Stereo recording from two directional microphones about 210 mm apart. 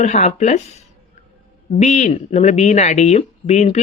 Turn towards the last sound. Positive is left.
turn(degrees=30)  # may be behind; listen again after turning